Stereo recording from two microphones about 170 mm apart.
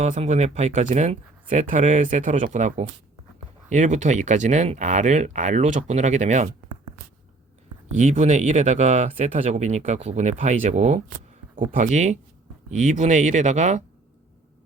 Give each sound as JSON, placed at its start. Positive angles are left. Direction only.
{"t": 0.0, "sound": "speech", "side_deg": -40}
{"t": 7.9, "sound": "speech", "side_deg": -45}